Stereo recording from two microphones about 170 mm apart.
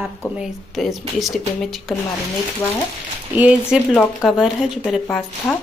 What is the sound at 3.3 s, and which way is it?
Speech, 10° right (ahead or behind).